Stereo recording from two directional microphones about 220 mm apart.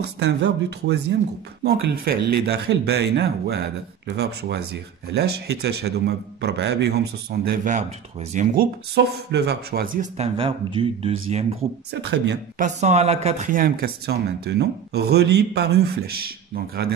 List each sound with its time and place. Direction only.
0.0 s speech: 50° right (ahead or behind); by 8.6 s 35° right (ahead or behind)
8.9 s speech: 50° right (ahead or behind); by 11.4 s 25° right (ahead or behind)
11.9 s speech: 50° right (ahead or behind)
12.5 s speech: 30° right (ahead or behind)